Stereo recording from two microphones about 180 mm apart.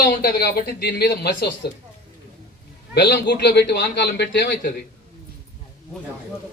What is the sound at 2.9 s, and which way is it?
A man's voice, 65° left (ahead or behind).